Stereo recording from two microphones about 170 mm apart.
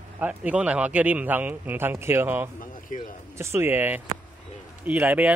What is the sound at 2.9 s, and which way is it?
Speech, 50° left (ahead or behind).